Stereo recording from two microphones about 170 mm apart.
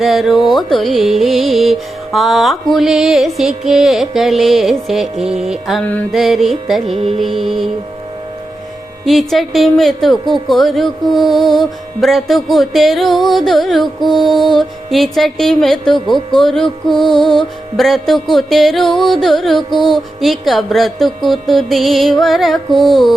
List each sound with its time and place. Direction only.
0.0 s music: centre (ahead or behind)
6.8 s music: 35° right (ahead or behind)
7.2 s music: centre (ahead or behind)
9.0 s music: centre (ahead or behind)